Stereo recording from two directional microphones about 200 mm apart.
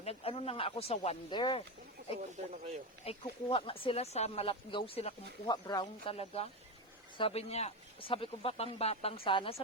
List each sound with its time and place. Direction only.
0.0 s speech: 30° left (ahead or behind)
3.0 s speech: 30° left (ahead or behind)
5.6 s speech: 20° left (ahead or behind)
6.1 s speech: 30° left (ahead or behind)